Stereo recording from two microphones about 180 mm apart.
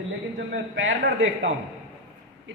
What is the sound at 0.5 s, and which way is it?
Speech, 90° right.